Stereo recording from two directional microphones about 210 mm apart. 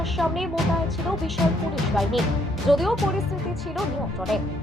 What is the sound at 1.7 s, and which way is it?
Speech, centre (ahead or behind).